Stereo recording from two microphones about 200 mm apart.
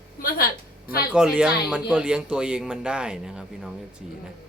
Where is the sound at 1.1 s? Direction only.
5° right (ahead or behind).